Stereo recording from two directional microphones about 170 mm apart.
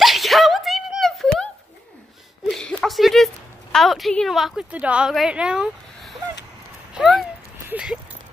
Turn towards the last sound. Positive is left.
turn(degrees=-5)  # may be behind; listen again after turning